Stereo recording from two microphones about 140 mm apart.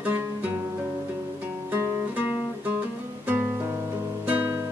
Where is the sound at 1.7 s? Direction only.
15° right (ahead or behind).